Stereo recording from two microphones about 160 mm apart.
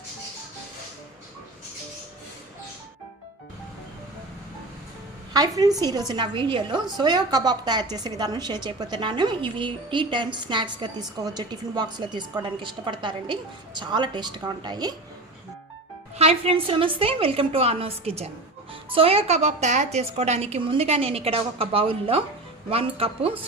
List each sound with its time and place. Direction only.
5.3 s a woman's voice: 25° right (ahead or behind)
16.1 s speech: 40° right (ahead or behind)